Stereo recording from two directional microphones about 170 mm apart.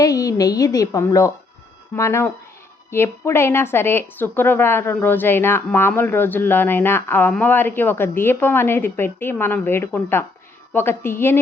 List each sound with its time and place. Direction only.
0.0 s a woman's voice: 20° left (ahead or behind)